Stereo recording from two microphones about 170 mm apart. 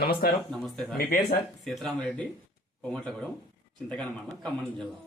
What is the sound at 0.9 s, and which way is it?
Speech, 65° left (ahead or behind).